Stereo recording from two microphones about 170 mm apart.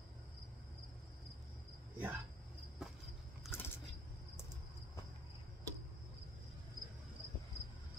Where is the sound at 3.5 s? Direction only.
15° left (ahead or behind).